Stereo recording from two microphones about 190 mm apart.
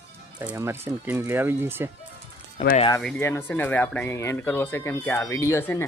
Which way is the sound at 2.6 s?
30° left (ahead or behind).